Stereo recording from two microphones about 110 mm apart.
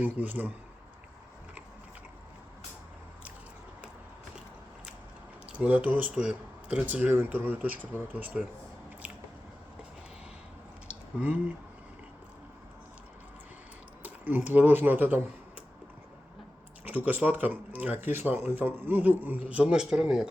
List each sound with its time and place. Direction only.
0.0 s speech: 15° right (ahead or behind)
5.5 s speech: 10° right (ahead or behind)
11.2 s speech: 15° right (ahead or behind)
14.0 s speech: 15° right (ahead or behind)
17.1 s speech: 15° right (ahead or behind)